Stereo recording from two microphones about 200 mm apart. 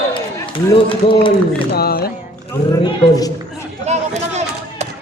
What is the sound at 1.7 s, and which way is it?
Speech, 50° left (ahead or behind).